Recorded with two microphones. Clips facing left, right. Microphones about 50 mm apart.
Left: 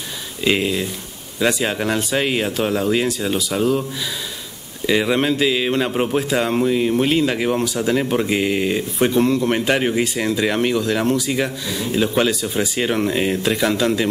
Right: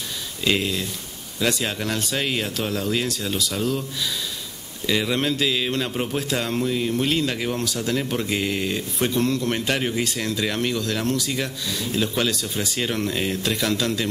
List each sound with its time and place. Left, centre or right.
0.4 s speech: centre
4.8 s speech: centre